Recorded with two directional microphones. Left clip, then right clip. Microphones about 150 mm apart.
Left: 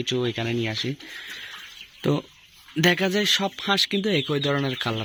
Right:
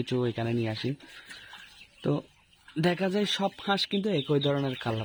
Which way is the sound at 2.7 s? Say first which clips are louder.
Left 7 dB; 10° right (ahead or behind).